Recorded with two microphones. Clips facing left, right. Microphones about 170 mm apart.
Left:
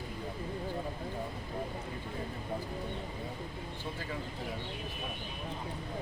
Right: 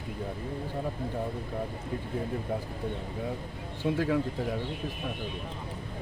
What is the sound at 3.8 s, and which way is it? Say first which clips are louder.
Speech: right 15 dB; 75° right (ahead or behind).